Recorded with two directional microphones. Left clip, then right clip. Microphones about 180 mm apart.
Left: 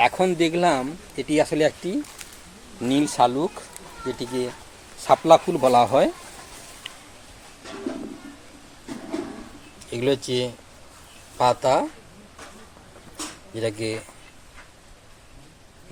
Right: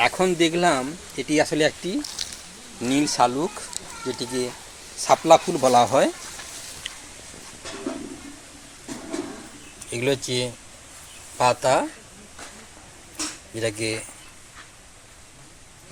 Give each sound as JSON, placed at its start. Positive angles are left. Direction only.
{"t": 0.0, "sound": "speech", "side_deg": 5}
{"t": 9.9, "sound": "speech", "side_deg": 10}
{"t": 13.6, "sound": "speech", "side_deg": 10}